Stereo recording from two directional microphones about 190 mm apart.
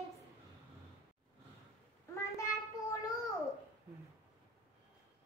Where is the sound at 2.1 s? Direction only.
15° left (ahead or behind).